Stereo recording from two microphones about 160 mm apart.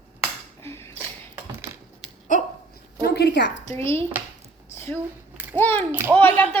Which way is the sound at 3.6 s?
15° left (ahead or behind).